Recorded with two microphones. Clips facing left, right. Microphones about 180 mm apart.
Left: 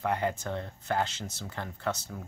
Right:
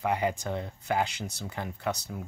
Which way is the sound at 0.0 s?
10° right (ahead or behind).